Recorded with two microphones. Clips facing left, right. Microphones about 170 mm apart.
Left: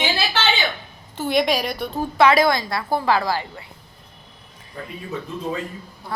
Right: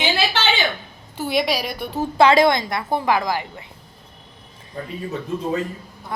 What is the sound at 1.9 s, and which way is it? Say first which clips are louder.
A woman's voice: right 2 dB; 25° right (ahead or behind).